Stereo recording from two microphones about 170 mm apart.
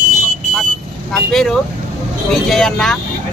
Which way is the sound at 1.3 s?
Centre (ahead or behind).